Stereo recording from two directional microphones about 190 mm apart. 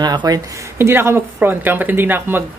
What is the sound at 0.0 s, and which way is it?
Speech, 20° right (ahead or behind).